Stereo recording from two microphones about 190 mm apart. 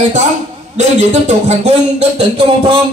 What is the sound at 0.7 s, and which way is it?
Speech, 35° right (ahead or behind).